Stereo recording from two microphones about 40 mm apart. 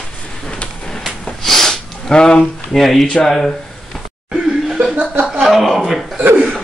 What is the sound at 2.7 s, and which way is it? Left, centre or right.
Speech, centre.